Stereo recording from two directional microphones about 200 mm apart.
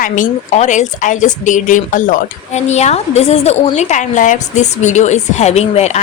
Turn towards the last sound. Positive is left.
turn(degrees=35)  # may be behind; listen again after turning